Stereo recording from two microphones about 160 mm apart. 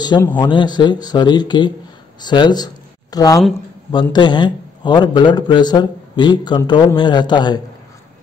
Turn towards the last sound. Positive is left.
turn(degrees=25)  # may be behind; listen again after turning